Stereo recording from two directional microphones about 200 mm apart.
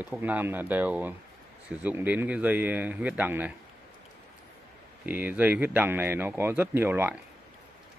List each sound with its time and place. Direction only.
0.0 s speech: 10° right (ahead or behind)
5.0 s speech: 10° right (ahead or behind)